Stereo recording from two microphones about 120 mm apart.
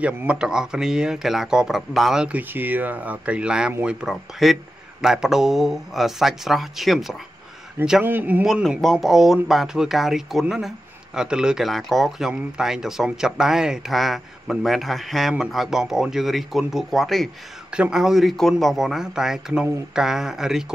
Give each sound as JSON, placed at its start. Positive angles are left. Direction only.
{"t": 0.0, "sound": "speech", "side_deg": -10}
{"t": 8.0, "sound": "speech", "side_deg": -15}
{"t": 8.5, "sound": "speech", "side_deg": 0}